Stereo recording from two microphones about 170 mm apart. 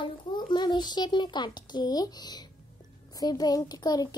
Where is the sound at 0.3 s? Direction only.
25° left (ahead or behind).